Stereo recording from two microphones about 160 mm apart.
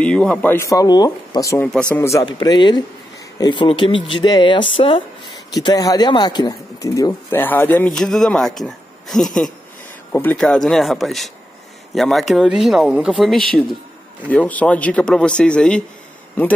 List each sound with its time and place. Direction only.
0.0 s speech: 5° left (ahead or behind)
1.7 s speech: 5° left (ahead or behind)
2.0 s speech: 20° left (ahead or behind)